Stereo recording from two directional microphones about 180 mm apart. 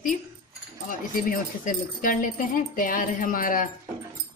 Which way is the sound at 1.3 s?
50° left (ahead or behind).